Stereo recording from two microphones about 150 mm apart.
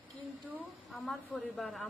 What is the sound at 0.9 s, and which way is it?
Speech, centre (ahead or behind).